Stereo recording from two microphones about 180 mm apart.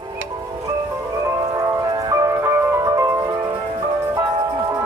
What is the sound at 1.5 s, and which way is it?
Music, 20° right (ahead or behind).